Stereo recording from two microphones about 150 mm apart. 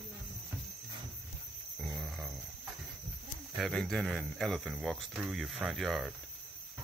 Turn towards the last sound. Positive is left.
turn(degrees=0)  # may be behind; listen again after turning